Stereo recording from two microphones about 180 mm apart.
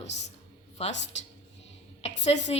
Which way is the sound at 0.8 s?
35° left (ahead or behind).